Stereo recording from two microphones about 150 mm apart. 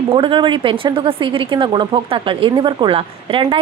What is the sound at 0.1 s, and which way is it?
A woman's voice, 35° right (ahead or behind).